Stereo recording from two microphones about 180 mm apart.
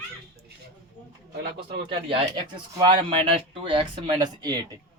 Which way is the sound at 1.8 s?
30° right (ahead or behind).